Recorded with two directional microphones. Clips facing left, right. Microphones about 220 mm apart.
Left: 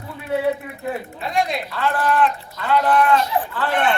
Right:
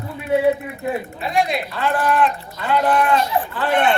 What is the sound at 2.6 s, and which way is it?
Sheep, 15° right (ahead or behind).